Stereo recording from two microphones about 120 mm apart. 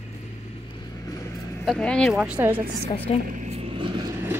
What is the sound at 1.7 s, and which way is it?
Speech, 10° left (ahead or behind).